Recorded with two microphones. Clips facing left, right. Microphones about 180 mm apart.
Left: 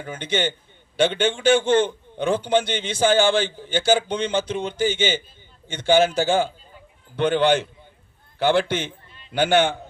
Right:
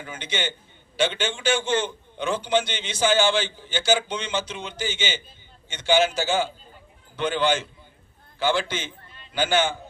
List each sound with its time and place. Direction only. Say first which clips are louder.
0.0 s a man's voice: left 6 dB; 55° left (ahead or behind)